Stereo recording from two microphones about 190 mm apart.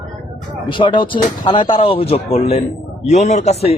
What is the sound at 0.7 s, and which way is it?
Speech, 25° left (ahead or behind).